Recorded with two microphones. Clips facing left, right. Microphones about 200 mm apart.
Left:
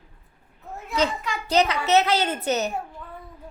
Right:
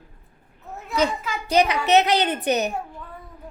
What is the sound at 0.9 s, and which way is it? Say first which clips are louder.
A child's voice: right 2 dB; 5° right (ahead or behind).